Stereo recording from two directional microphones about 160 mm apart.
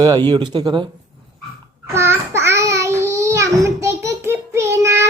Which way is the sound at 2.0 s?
15° right (ahead or behind).